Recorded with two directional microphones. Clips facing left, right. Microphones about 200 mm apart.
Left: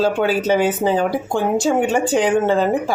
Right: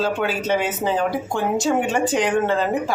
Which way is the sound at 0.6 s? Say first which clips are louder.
Left 5 dB; 30° left (ahead or behind).